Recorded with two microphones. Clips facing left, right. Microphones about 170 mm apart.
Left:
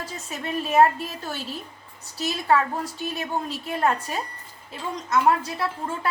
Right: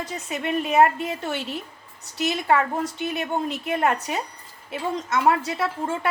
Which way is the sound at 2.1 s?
65° right (ahead or behind).